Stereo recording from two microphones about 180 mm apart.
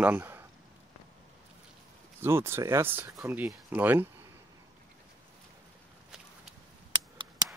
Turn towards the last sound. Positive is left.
turn(degrees=-25)  # may be behind; listen again after turning